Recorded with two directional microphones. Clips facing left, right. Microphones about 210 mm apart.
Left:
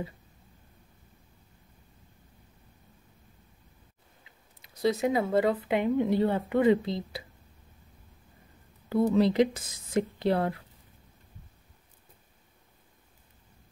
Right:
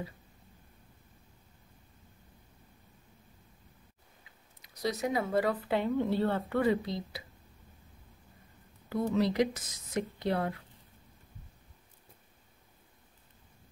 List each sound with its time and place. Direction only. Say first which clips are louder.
4.6 s speech: left 6 dB; 25° left (ahead or behind)
8.8 s speech: left 6 dB; 30° left (ahead or behind)